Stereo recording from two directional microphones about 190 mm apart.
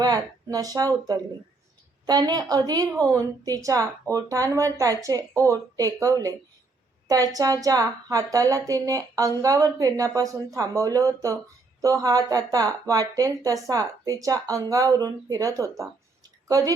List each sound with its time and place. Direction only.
0.0 s a woman's voice: 20° right (ahead or behind)